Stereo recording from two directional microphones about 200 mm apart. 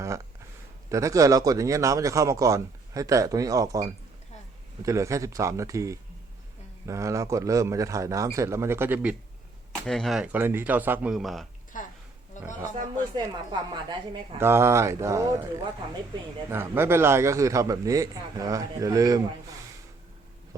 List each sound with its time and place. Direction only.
0.9 s speech: 15° right (ahead or behind); by 11.4 s centre (ahead or behind)
11.7 s a sound: 40° left (ahead or behind)
12.4 s a man's voice: 40° left (ahead or behind)
12.7 s a woman's voice: 20° right (ahead or behind)